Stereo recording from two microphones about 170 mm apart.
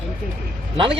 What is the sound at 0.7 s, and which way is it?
Speech, 30° right (ahead or behind).